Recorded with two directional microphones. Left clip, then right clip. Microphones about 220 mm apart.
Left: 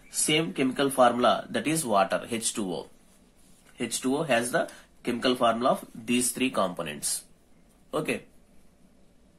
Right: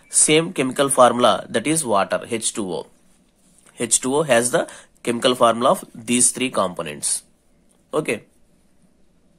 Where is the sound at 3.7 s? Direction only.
40° right (ahead or behind).